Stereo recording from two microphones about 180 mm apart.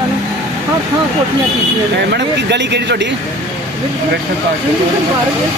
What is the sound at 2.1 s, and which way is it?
Speech, 70° right (ahead or behind).